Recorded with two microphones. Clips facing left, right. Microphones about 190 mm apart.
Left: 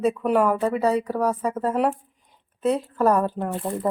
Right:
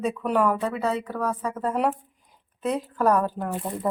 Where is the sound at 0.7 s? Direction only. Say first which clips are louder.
Left 5 dB; 40° left (ahead or behind).